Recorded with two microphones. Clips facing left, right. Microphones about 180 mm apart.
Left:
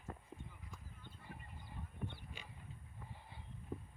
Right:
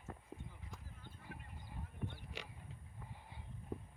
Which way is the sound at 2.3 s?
80° right.